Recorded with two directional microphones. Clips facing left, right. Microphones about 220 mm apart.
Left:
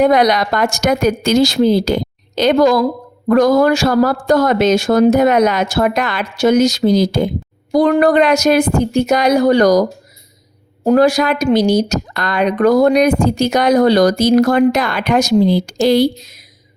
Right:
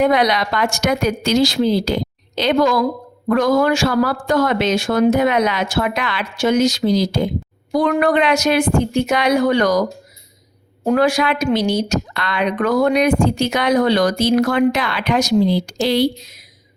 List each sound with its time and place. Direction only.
0.0 s speech: 45° left (ahead or behind)
7.7 s a woman's voice: 35° left (ahead or behind)
10.8 s a woman's voice: 40° left (ahead or behind)